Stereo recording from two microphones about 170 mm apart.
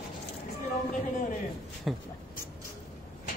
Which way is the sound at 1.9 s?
Centre (ahead or behind).